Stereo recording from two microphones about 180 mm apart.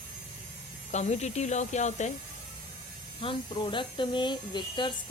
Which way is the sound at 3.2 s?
30° left (ahead or behind).